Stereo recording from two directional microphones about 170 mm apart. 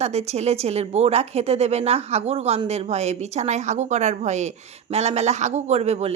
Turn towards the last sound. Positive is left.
turn(degrees=-40)  # may be behind; listen again after turning